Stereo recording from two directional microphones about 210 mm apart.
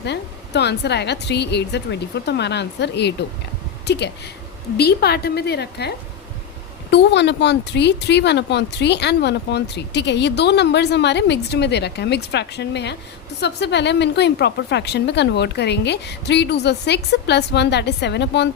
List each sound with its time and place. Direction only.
0.0 s a woman's voice: 55° left (ahead or behind)
6.9 s a woman's voice: 55° left (ahead or behind)